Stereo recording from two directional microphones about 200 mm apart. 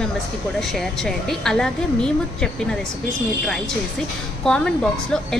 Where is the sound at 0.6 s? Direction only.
Centre (ahead or behind).